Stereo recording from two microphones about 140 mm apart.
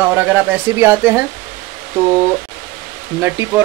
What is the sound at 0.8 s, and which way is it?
Speech, 15° right (ahead or behind).